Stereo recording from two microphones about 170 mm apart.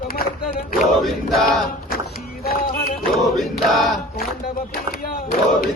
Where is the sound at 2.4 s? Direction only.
65° left (ahead or behind).